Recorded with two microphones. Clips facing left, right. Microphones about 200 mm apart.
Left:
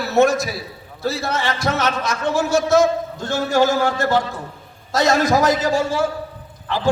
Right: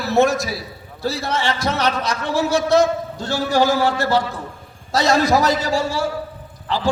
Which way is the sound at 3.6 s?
20° left (ahead or behind).